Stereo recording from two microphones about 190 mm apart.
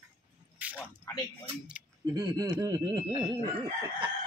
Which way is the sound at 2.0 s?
20° right (ahead or behind).